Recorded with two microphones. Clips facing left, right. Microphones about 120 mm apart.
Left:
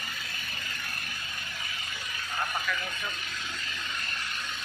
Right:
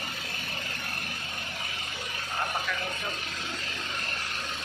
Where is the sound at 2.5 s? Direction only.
30° right (ahead or behind).